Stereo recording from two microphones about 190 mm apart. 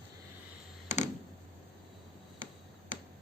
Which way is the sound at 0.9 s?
40° left (ahead or behind).